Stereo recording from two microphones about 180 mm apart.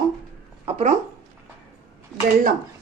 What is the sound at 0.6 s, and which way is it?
Speech, 40° right (ahead or behind).